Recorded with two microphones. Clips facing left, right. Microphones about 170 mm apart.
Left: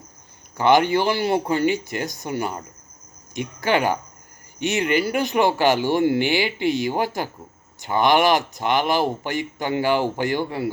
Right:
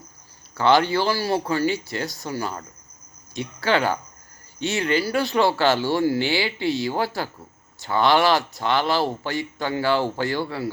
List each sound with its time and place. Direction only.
0.5 s speech: 15° left (ahead or behind)